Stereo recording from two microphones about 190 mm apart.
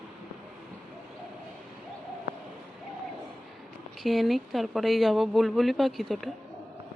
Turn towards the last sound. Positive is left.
turn(degrees=0)  # may be behind; listen again after turning